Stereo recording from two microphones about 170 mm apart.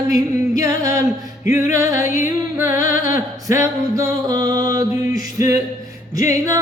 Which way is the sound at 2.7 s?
50° left (ahead or behind).